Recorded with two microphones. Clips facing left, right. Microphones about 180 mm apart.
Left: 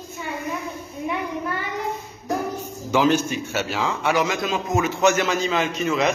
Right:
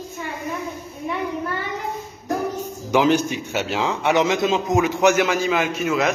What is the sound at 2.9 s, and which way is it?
A man's voice, 15° right (ahead or behind).